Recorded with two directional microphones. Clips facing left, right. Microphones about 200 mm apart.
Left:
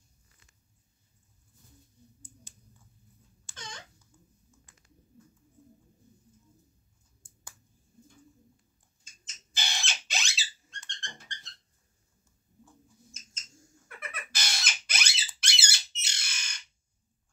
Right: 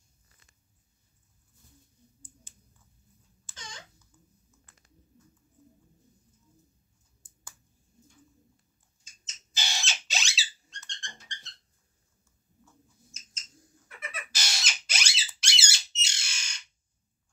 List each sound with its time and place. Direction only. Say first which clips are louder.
9.0 s bird: left 1 dB; 55° left (ahead or behind)
13.1 s mouse: left 2 dB; 55° left (ahead or behind)
13.5 s bird: left 1 dB; centre (ahead or behind)
13.8 s squeak: right 1 dB; 55° left (ahead or behind)
15.4 s bird: even; 55° left (ahead or behind)